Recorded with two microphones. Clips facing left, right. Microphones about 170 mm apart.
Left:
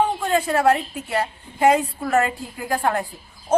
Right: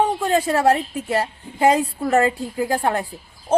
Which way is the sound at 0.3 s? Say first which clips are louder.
Right 1 dB; 35° right (ahead or behind).